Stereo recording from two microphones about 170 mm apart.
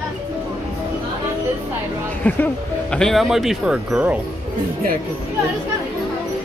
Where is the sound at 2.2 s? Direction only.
10° left (ahead or behind); by 4.2 s 5° right (ahead or behind).